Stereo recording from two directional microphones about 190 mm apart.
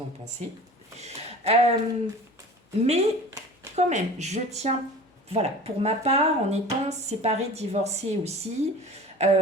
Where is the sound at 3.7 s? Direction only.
35° right (ahead or behind).